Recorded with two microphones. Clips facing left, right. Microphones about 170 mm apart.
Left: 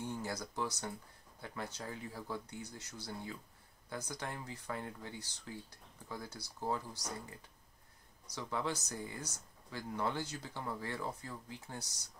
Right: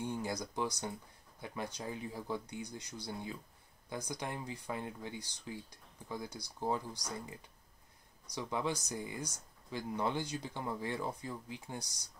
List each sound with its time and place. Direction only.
0.0 s speech: 15° right (ahead or behind)
8.4 s speech: 15° right (ahead or behind)